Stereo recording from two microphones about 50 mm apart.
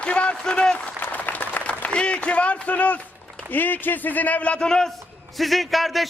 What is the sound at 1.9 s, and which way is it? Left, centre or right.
A man's voice, left.